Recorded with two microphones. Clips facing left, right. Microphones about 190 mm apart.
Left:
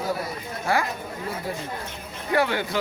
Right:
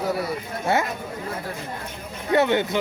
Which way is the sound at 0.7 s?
25° right (ahead or behind).